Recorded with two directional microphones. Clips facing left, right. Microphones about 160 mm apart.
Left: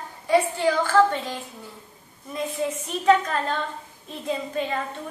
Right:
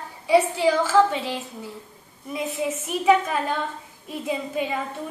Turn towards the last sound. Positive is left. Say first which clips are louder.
# right 1 dB
turn(degrees=-10)  # may be behind; listen again after turning